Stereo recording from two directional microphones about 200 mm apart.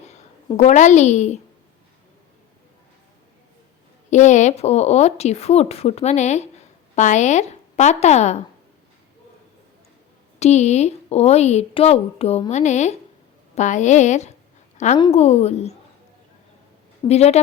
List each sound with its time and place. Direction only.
0.5 s a woman's voice: 35° left (ahead or behind)
4.1 s a woman's voice: 35° left (ahead or behind)
10.4 s a woman's voice: 35° left (ahead or behind)
17.1 s a woman's voice: 30° left (ahead or behind)